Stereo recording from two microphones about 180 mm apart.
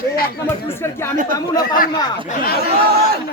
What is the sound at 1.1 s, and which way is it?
Speech, 50° right (ahead or behind).